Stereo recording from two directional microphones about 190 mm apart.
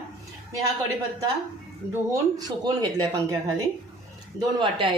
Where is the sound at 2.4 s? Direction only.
20° right (ahead or behind).